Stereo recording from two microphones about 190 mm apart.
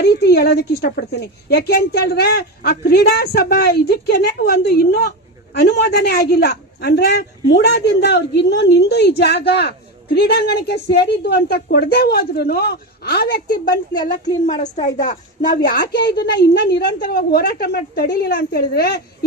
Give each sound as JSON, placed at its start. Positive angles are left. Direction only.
{"t": 0.0, "sound": "speech", "side_deg": 60}
{"t": 15.4, "sound": "speech", "side_deg": 50}